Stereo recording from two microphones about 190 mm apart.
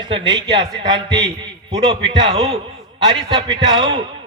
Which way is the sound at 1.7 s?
30° right (ahead or behind).